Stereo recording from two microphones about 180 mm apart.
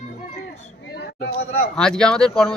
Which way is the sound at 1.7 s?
5° left (ahead or behind).